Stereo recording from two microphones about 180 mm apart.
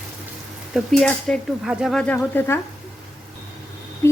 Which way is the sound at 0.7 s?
Centre (ahead or behind).